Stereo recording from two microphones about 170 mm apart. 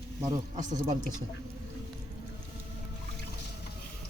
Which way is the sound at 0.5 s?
45° right (ahead or behind).